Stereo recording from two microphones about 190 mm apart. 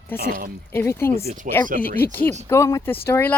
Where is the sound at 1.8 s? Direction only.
50° left (ahead or behind).